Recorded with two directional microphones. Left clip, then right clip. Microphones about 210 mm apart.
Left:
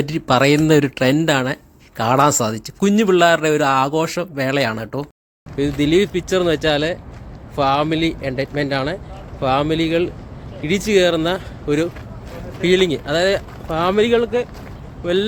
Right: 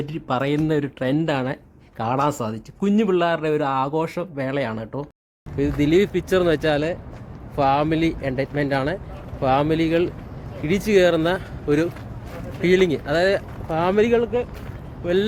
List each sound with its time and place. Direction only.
0.0 s speech: 15° left (ahead or behind)